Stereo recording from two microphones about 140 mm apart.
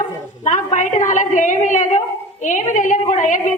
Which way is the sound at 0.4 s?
60° left (ahead or behind).